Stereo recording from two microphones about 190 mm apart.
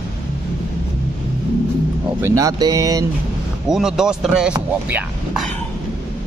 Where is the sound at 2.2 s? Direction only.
15° right (ahead or behind).